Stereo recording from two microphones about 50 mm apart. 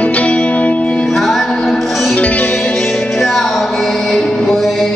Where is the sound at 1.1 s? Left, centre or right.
Centre.